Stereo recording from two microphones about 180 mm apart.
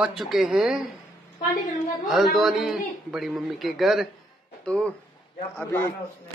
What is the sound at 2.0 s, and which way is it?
A man's voice, centre (ahead or behind).